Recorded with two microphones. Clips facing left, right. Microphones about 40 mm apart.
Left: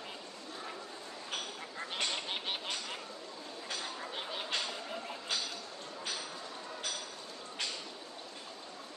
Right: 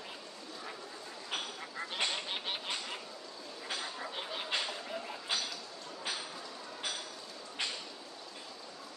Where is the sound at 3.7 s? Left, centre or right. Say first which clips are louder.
Right 1 dB; centre.